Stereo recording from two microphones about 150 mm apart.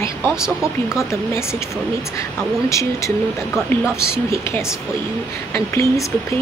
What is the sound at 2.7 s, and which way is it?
Speech, 20° left (ahead or behind).